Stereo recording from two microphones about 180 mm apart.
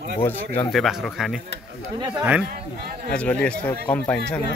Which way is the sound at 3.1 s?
5° left (ahead or behind).